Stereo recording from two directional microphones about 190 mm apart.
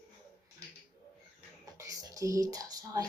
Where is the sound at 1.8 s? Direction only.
20° right (ahead or behind).